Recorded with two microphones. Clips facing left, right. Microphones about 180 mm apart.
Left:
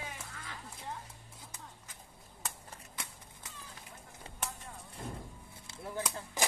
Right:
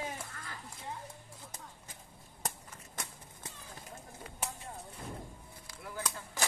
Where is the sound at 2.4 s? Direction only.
40° right (ahead or behind).